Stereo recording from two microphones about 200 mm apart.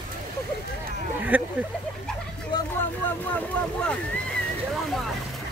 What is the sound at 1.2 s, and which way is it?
Speech, 10° right (ahead or behind).